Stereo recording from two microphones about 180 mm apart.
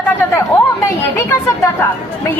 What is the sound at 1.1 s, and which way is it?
Speech, 15° left (ahead or behind).